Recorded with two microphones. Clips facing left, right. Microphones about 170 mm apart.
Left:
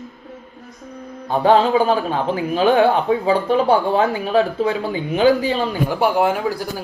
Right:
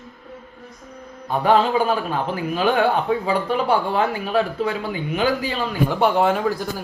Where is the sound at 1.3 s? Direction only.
30° left (ahead or behind).